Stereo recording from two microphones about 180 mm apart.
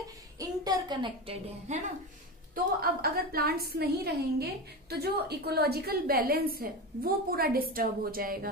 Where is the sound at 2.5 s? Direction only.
55° right (ahead or behind).